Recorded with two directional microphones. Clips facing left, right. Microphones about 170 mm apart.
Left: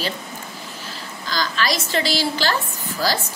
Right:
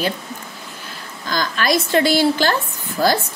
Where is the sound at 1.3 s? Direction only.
50° right (ahead or behind).